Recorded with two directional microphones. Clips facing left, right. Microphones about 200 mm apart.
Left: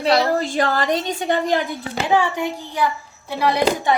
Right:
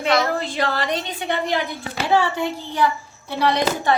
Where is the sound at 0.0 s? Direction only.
35° left (ahead or behind).